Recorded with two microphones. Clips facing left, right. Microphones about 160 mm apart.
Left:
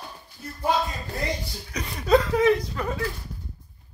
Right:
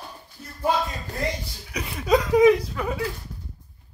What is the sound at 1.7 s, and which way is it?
Speech, 5° right (ahead or behind).